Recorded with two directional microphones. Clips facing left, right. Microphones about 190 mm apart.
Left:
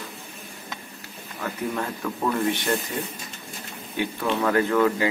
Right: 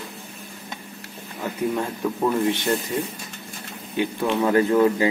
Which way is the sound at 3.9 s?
15° right (ahead or behind).